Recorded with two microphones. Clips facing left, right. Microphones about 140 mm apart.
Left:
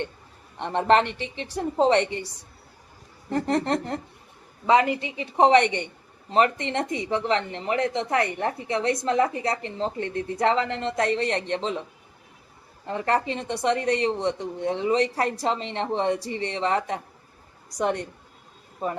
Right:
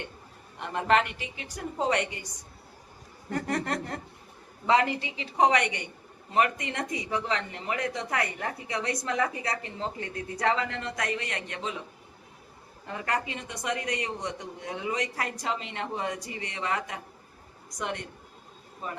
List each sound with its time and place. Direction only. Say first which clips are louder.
0.6 s a woman's voice: left 5 dB; 30° left (ahead or behind)
12.9 s speech: left 7 dB; 30° left (ahead or behind)